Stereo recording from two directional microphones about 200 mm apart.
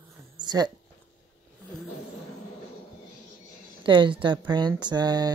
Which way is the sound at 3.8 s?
25° right (ahead or behind).